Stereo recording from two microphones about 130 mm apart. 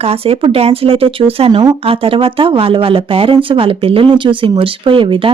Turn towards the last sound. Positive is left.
turn(degrees=-40)  # may be behind; listen again after turning